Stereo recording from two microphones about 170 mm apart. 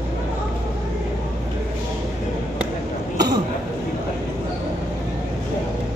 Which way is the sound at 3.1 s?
25° right (ahead or behind).